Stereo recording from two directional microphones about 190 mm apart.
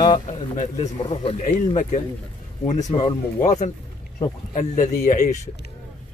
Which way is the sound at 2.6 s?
40° left (ahead or behind).